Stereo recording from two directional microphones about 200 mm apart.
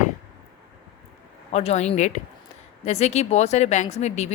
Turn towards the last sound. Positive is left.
turn(degrees=35)  # may be behind; listen again after turning